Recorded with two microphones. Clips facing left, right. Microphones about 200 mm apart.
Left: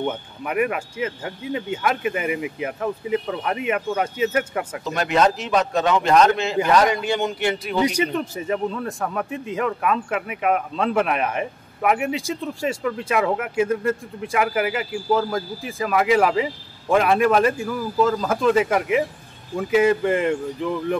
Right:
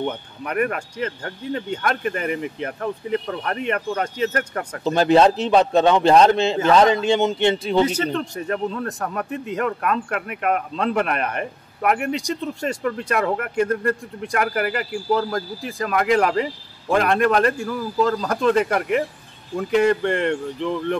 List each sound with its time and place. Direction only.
0.0 s speech: 5° left (ahead or behind)
4.8 s a man's voice: 30° right (ahead or behind)
7.8 s speech: 10° left (ahead or behind)